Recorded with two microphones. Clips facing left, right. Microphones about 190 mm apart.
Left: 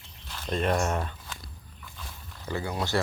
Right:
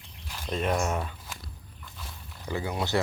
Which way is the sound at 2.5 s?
20° right (ahead or behind).